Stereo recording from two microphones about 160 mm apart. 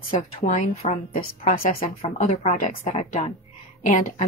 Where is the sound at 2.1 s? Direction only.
45° left (ahead or behind).